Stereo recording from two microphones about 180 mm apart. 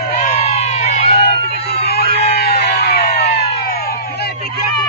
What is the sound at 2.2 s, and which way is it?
Music, 65° left (ahead or behind).